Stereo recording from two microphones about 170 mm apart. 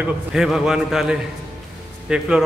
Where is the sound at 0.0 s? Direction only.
5° right (ahead or behind).